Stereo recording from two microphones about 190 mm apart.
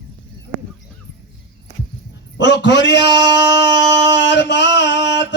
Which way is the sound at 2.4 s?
70° left (ahead or behind).